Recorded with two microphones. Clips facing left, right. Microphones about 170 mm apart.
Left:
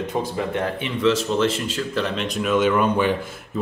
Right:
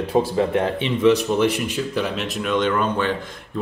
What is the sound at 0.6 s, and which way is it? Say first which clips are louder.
Speech: right 3 dB; 15° right (ahead or behind).